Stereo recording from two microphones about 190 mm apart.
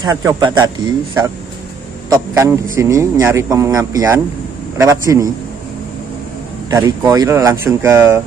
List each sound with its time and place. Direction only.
0.0 s speech: 20° right (ahead or behind)
2.0 s a man's voice: 15° right (ahead or behind)
6.7 s a man's voice: 20° right (ahead or behind)